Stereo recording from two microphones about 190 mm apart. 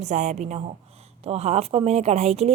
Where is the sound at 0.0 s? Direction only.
40° right (ahead or behind).